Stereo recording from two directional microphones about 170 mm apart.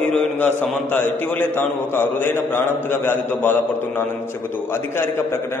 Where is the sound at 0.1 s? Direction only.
10° left (ahead or behind).